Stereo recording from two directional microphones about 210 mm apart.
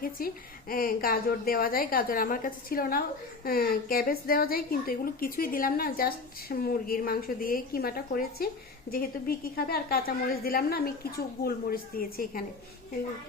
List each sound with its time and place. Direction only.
0.2 s a woman's voice: 45° left (ahead or behind)